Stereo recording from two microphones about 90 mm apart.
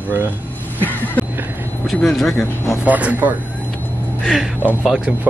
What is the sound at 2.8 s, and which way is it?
Speech, 15° right (ahead or behind).